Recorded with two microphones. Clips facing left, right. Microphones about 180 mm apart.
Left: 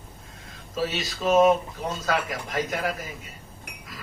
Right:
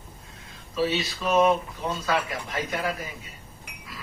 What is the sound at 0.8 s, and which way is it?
A man's voice, 45° left (ahead or behind).